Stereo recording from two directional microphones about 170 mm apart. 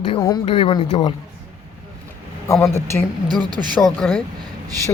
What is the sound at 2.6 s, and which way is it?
Speech, 15° left (ahead or behind).